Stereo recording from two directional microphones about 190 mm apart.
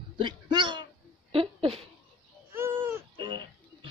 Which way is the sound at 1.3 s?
30° right (ahead or behind).